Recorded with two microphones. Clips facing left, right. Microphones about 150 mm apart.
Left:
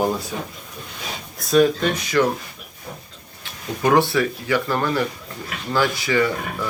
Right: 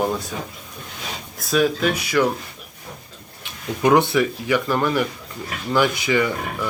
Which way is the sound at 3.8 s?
15° right (ahead or behind).